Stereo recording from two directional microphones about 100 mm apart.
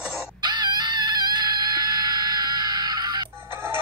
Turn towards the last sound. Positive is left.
turn(degrees=-25)  # may be behind; listen again after turning